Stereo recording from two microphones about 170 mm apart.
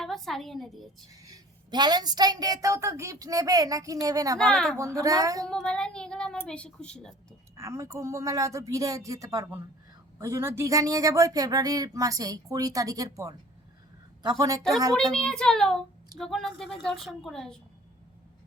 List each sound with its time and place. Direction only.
0.0 s a woman's voice: centre (ahead or behind)
1.2 s speech: 25° right (ahead or behind)
4.4 s a woman's voice: 5° left (ahead or behind)
4.8 s speech: 20° right (ahead or behind)
5.5 s a woman's voice: 5° left (ahead or behind)
7.5 s a woman's voice: 20° right (ahead or behind)
15.1 s a woman's voice: 5° left (ahead or behind)